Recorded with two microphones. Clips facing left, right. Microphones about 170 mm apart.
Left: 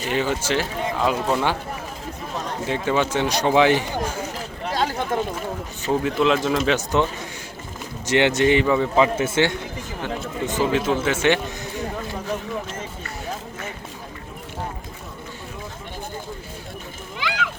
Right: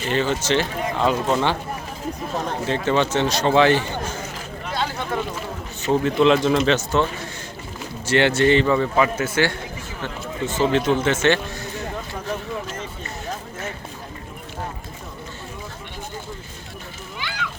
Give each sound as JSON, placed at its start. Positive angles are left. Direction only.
{"t": 0.0, "sound": "speech", "side_deg": 15}
{"t": 2.6, "sound": "speech", "side_deg": 10}
{"t": 4.6, "sound": "a sound", "side_deg": 40}
{"t": 5.8, "sound": "a man's voice", "side_deg": 5}
{"t": 6.7, "sound": "speech", "side_deg": 15}
{"t": 9.0, "sound": "a man's voice", "side_deg": 25}
{"t": 17.2, "sound": "a sound", "side_deg": 90}